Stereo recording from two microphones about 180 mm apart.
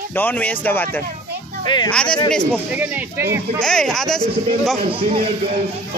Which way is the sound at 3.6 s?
5° left (ahead or behind).